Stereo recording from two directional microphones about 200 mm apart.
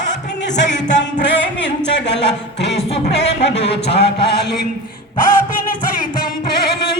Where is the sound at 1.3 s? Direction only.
65° left (ahead or behind).